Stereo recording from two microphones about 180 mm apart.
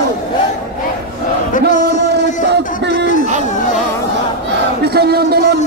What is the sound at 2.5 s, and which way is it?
Music, 75° right (ahead or behind).